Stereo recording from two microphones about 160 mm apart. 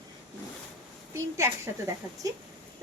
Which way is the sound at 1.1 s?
15° right (ahead or behind).